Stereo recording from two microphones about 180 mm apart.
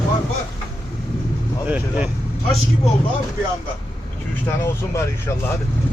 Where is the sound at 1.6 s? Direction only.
10° right (ahead or behind).